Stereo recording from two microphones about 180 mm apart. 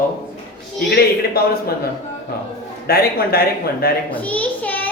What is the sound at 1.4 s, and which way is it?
Speech, 60° left (ahead or behind).